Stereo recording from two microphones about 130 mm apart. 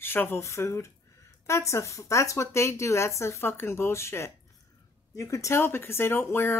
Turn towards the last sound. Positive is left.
turn(degrees=15)  # may be behind; listen again after turning